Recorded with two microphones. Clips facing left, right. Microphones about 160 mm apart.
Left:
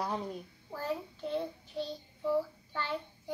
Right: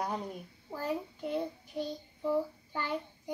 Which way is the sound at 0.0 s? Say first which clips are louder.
Even; 10° right (ahead or behind).